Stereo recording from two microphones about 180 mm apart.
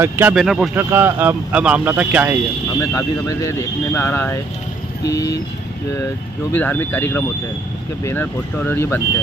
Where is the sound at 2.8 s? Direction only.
15° left (ahead or behind).